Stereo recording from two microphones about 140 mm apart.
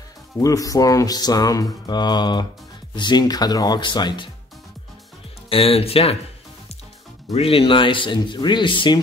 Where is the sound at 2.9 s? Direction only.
30° left (ahead or behind).